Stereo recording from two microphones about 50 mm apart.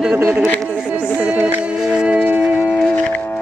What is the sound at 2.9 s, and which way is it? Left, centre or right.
Music, left.